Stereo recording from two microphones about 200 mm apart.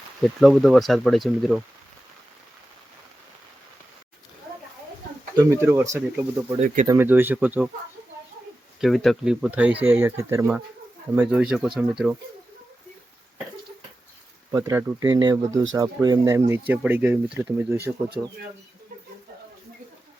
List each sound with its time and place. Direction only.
0.3 s speech: centre (ahead or behind)
5.4 s speech: 15° right (ahead or behind)
8.8 s speech: centre (ahead or behind)
14.5 s speech: 15° right (ahead or behind)